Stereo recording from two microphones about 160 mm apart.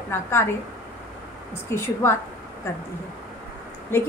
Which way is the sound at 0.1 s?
15° left (ahead or behind).